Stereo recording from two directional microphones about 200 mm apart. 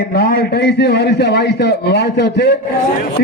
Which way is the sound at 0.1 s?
50° left (ahead or behind).